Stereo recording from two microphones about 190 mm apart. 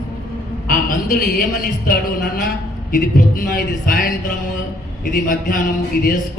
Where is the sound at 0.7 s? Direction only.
45° left (ahead or behind).